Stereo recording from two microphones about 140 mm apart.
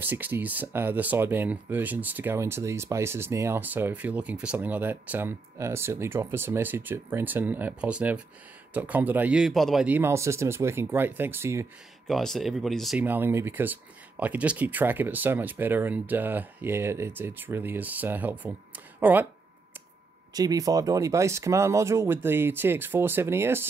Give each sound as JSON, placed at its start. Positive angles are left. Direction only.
{"t": 0.0, "sound": "speech", "side_deg": -15}
{"t": 9.8, "sound": "speech", "side_deg": -15}
{"t": 12.1, "sound": "speech", "side_deg": 0}
{"t": 13.0, "sound": "speech", "side_deg": -15}
{"t": 20.3, "sound": "speech", "side_deg": -25}